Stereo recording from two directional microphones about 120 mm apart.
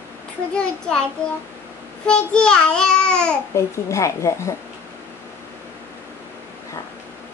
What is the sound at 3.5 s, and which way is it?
A woman's voice, 25° left (ahead or behind).